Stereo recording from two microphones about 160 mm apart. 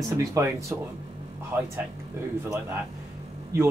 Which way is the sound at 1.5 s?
15° right (ahead or behind).